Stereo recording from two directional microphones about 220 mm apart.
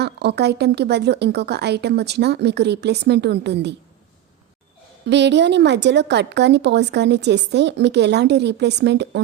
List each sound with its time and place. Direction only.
0.0 s a woman's voice: 50° right (ahead or behind)
5.0 s a woman's voice: 50° right (ahead or behind)